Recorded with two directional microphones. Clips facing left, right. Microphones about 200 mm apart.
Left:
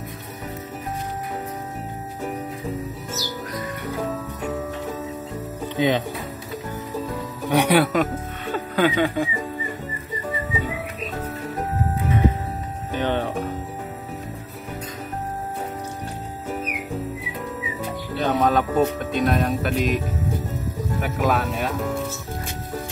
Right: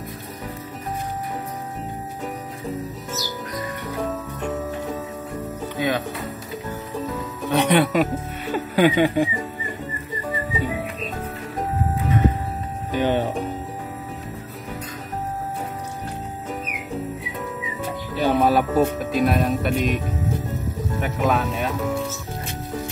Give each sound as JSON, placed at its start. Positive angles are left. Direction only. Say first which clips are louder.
{"t": 5.8, "sound": "speech", "louder": "left 3 dB", "side_deg": 20}
{"t": 7.4, "sound": "music", "louder": "even", "side_deg": 10}
{"t": 8.9, "sound": "speech", "louder": "right 3 dB", "side_deg": -15}
{"t": 12.9, "sound": "speech", "louder": "right 3 dB", "side_deg": -10}
{"t": 18.2, "sound": "speech", "louder": "right 2 dB", "side_deg": -10}
{"t": 21.0, "sound": "speech", "louder": "right 1 dB", "side_deg": 0}